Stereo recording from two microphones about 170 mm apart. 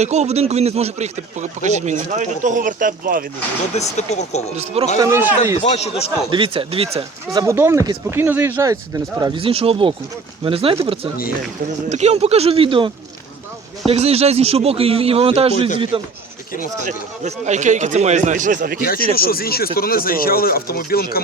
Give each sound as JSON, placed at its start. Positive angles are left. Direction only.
{"t": 0.0, "sound": "a man's voice", "side_deg": -40}
{"t": 3.8, "sound": "speech", "side_deg": 40}
{"t": 4.5, "sound": "speech", "side_deg": -40}
{"t": 4.9, "sound": "speech", "side_deg": -15}
{"t": 5.5, "sound": "speech", "side_deg": 40}
{"t": 6.3, "sound": "speech", "side_deg": -30}
{"t": 7.3, "sound": "a man's voice", "side_deg": -15}
{"t": 18.8, "sound": "speech", "side_deg": 60}